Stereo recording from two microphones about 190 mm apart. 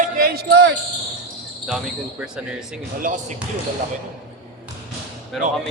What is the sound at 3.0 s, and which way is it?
Speech, 40° right (ahead or behind).